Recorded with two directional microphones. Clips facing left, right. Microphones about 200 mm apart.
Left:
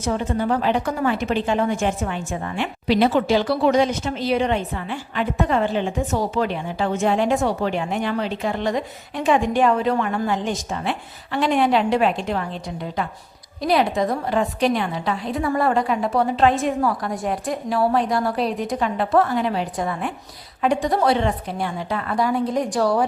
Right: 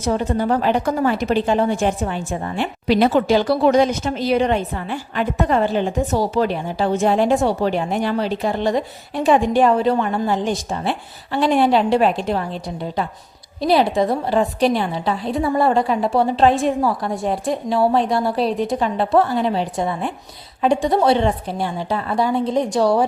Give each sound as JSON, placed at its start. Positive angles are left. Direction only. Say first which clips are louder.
{"t": 0.0, "sound": "a woman's voice", "louder": "right 3 dB", "side_deg": -40}
{"t": 13.6, "sound": "a woman's voice", "louder": "right 3 dB", "side_deg": -30}